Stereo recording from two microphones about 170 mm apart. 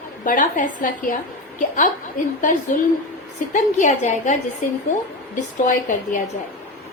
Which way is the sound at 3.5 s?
45° left (ahead or behind).